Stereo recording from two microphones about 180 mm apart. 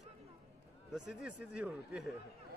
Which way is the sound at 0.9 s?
5° right (ahead or behind).